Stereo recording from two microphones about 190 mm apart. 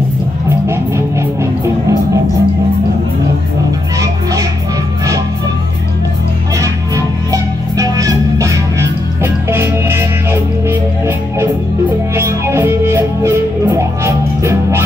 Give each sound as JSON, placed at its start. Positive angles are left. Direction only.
{"t": 0.7, "sound": "music", "side_deg": -15}
{"t": 4.0, "sound": "music", "side_deg": -15}
{"t": 7.7, "sound": "music", "side_deg": -20}